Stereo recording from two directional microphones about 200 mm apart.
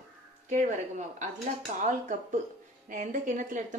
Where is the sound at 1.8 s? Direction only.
40° right (ahead or behind).